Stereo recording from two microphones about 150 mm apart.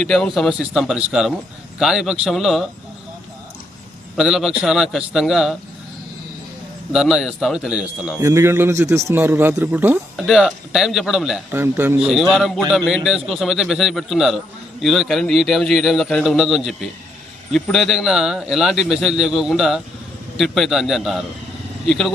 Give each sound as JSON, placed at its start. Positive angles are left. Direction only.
{"t": 0.0, "sound": "a man's voice", "side_deg": 5}
{"t": 4.2, "sound": "a man's voice", "side_deg": 0}
{"t": 6.9, "sound": "a man's voice", "side_deg": -5}
{"t": 8.2, "sound": "a man's voice", "side_deg": -20}
{"t": 10.2, "sound": "a man's voice", "side_deg": 0}
{"t": 11.5, "sound": "a man's voice", "side_deg": -15}